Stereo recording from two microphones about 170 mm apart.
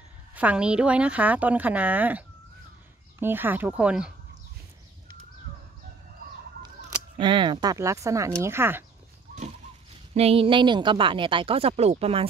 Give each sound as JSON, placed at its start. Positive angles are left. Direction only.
{"t": 0.3, "sound": "a woman's voice", "side_deg": -10}
{"t": 7.2, "sound": "speech", "side_deg": -30}
{"t": 10.1, "sound": "a woman's voice", "side_deg": -35}